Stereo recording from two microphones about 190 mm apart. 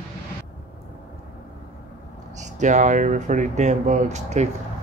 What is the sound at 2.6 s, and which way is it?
Speech, 40° right (ahead or behind).